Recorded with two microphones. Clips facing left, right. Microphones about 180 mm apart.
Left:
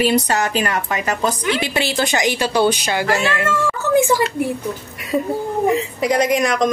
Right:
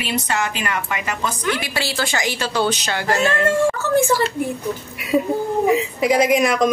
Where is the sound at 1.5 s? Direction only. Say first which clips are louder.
Left 4 dB; 25° left (ahead or behind).